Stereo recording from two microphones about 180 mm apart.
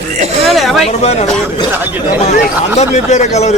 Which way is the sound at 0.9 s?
35° left (ahead or behind).